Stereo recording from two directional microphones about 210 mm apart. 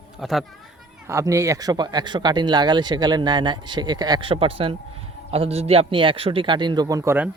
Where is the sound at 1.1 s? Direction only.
15° right (ahead or behind).